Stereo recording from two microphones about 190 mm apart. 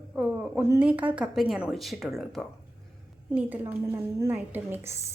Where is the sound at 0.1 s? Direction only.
10° right (ahead or behind).